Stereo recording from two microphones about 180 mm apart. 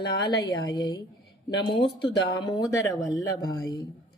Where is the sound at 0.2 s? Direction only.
20° left (ahead or behind).